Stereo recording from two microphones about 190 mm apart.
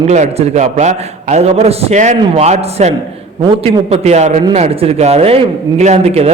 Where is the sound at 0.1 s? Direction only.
35° right (ahead or behind).